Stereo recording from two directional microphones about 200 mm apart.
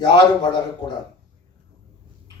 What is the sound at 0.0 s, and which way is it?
Speech, 60° right (ahead or behind).